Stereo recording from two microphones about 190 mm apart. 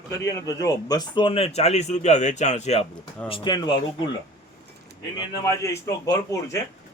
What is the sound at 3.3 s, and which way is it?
Speech, 25° left (ahead or behind).